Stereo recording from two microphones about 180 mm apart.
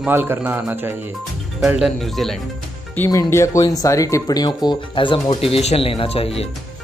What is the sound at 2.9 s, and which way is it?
Speech, 15° left (ahead or behind).